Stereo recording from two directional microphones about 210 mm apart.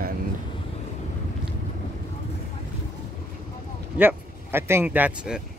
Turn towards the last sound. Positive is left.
turn(degrees=-5)  # may be behind; listen again after turning